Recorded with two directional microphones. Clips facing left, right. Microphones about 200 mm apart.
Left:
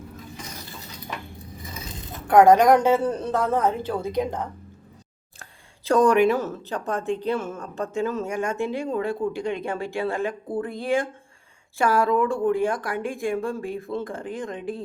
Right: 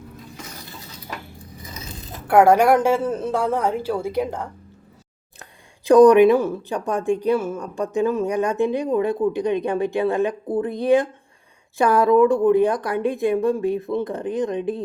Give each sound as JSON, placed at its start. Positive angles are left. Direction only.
{"t": 2.2, "sound": "a woman's voice", "side_deg": -10}